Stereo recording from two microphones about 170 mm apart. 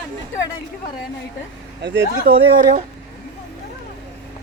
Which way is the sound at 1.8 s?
80° right.